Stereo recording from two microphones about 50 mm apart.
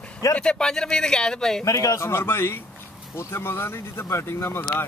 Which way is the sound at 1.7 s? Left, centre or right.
Left.